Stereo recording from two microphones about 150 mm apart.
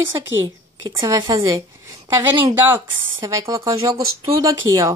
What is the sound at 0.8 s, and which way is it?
Speech, 25° right (ahead or behind).